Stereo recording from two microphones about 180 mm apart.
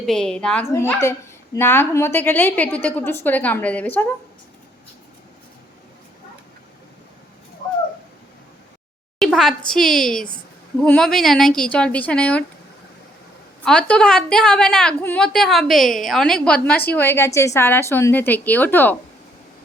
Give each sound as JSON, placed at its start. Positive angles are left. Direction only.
{"t": 0.0, "sound": "a woman's voice", "side_deg": 5}
{"t": 9.1, "sound": "speech", "side_deg": 0}
{"t": 13.7, "sound": "a woman's voice", "side_deg": 5}